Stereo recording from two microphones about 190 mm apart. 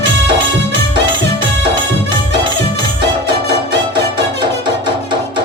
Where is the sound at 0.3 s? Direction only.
25° right (ahead or behind).